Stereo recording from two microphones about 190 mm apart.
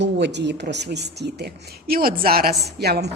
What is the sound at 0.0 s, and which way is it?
Speech, 65° right (ahead or behind).